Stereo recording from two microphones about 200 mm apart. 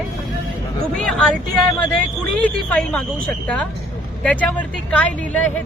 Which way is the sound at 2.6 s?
5° left (ahead or behind).